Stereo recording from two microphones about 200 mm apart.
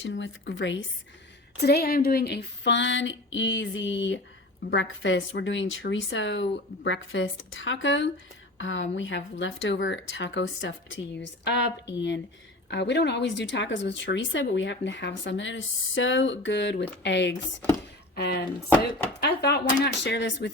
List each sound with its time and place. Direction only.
0.0 s speech: 65° left (ahead or behind)
1.5 s speech: 55° left (ahead or behind)